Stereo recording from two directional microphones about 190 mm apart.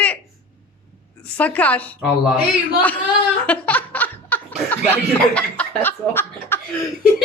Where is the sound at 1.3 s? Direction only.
10° left (ahead or behind).